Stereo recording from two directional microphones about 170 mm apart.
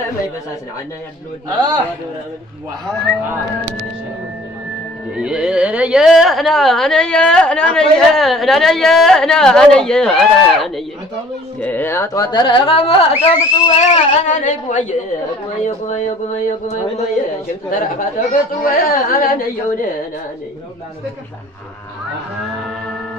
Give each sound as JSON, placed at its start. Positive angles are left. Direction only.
{"t": 5.1, "sound": "speech", "side_deg": -5}
{"t": 11.6, "sound": "speech", "side_deg": 10}